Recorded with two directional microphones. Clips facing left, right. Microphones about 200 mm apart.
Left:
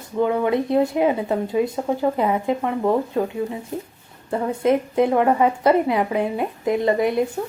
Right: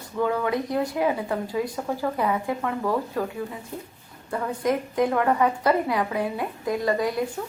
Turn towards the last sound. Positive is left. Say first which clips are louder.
# left 5 dB
turn(degrees=25)  # may be behind; listen again after turning